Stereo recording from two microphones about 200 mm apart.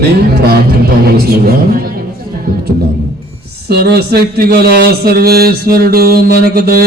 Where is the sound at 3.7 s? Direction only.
50° right (ahead or behind).